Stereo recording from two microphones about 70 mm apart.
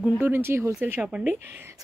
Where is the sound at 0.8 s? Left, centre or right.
Right.